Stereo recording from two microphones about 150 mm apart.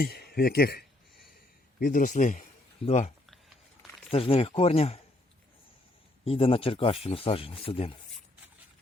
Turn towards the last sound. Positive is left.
turn(degrees=35)  # may be behind; listen again after turning